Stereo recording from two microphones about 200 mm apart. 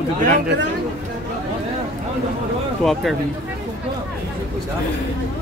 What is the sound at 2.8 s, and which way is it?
Speech, centre (ahead or behind).